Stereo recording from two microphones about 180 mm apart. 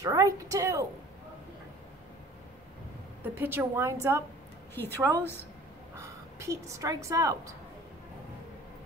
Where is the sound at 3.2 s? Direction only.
10° right (ahead or behind).